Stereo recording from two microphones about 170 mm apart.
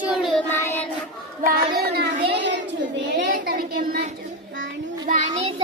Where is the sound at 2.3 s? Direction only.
90° right.